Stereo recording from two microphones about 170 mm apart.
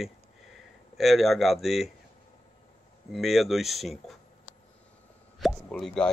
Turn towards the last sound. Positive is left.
turn(degrees=5)  # may be behind; listen again after turning